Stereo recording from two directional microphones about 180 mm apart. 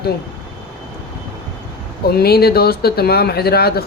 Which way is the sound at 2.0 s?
60° left (ahead or behind).